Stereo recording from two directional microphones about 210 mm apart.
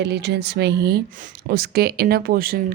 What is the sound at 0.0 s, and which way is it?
Speech, 55° right (ahead or behind).